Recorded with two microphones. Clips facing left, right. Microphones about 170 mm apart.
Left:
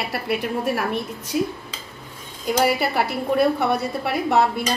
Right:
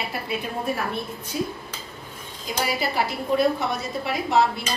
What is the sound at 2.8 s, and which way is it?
A woman's voice, 65° left (ahead or behind).